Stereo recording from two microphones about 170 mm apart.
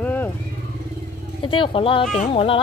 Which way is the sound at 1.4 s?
30° left (ahead or behind).